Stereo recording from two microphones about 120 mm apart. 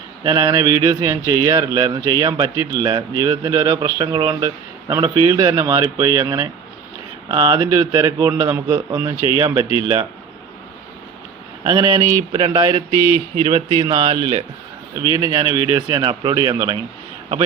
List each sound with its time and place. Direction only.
0.3 s a man's voice: 30° right (ahead or behind)
11.6 s a man's voice: 30° right (ahead or behind)
12.3 s mantra: 45° right (ahead or behind)
12.9 s mantra: 25° left (ahead or behind)
13.7 s a man's voice: 40° right (ahead or behind)